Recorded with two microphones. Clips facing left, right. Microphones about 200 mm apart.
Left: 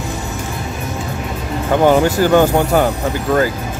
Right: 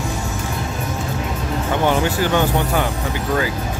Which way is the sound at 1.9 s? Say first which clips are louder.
Left 7 dB; 45° left (ahead or behind).